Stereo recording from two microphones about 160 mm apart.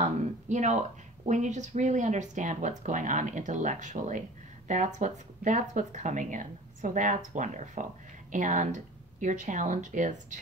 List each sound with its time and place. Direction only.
0.0 s speech: 45° right (ahead or behind)